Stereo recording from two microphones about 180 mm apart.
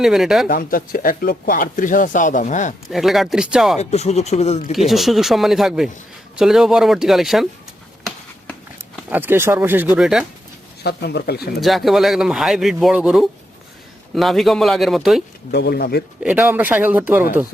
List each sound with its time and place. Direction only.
0.0 s speech: centre (ahead or behind)
0.4 s speech: 50° left (ahead or behind)
2.9 s speech: centre (ahead or behind)
3.8 s speech: 35° left (ahead or behind)
4.7 s speech: centre (ahead or behind)
9.0 s speech: 10° right (ahead or behind)
10.8 s speech: 65° left (ahead or behind)
11.6 s speech: centre (ahead or behind)
15.5 s speech: 65° left (ahead or behind)
16.2 s speech: 10° right (ahead or behind)